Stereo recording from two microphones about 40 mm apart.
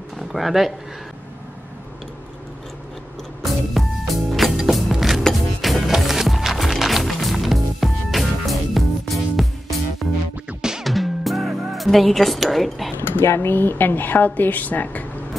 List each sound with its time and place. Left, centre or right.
0.3 s speech: centre
3.7 s music: centre
13.4 s speech: left